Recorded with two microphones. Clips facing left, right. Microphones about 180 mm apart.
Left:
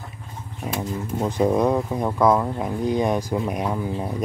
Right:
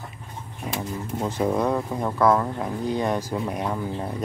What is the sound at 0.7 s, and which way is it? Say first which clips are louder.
Speech: left 3 dB; 15° left (ahead or behind).